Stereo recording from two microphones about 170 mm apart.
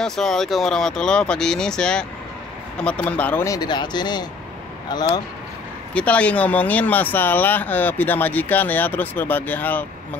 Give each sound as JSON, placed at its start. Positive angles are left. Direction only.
{"t": 0.0, "sound": "speech", "side_deg": 5}
{"t": 5.9, "sound": "speech", "side_deg": 10}